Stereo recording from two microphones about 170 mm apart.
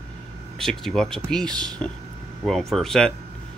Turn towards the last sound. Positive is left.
turn(degrees=0)  # may be behind; listen again after turning